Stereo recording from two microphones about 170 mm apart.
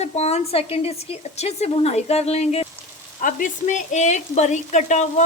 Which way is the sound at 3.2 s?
50° left (ahead or behind).